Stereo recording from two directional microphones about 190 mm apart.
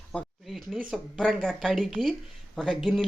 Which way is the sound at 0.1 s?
Centre (ahead or behind).